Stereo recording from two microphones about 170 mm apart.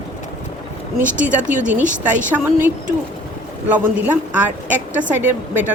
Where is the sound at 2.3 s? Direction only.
10° right (ahead or behind).